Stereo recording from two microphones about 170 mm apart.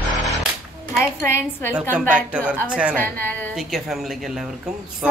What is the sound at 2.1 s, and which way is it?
Speech, 10° right (ahead or behind).